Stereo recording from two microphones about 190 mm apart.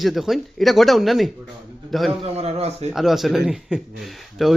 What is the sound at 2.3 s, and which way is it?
Speech, 35° right (ahead or behind).